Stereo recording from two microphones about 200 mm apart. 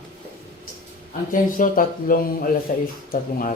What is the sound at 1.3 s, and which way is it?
A man's voice, 40° left (ahead or behind).